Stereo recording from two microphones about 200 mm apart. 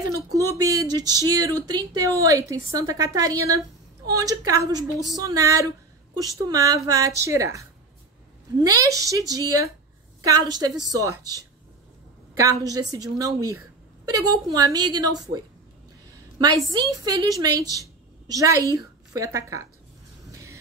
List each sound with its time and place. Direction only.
0.1 s a woman's voice: 15° right (ahead or behind)
8.6 s a woman's voice: 15° right (ahead or behind)
16.7 s a woman's voice: 20° right (ahead or behind)
20.2 s vehicle: 15° right (ahead or behind)